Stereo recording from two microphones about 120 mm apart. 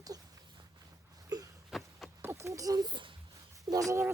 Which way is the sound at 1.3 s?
35° right (ahead or behind).